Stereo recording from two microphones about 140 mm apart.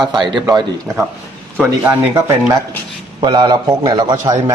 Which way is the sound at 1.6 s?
20° right (ahead or behind).